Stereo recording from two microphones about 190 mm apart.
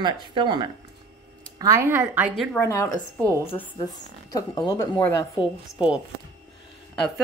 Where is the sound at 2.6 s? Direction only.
15° left (ahead or behind).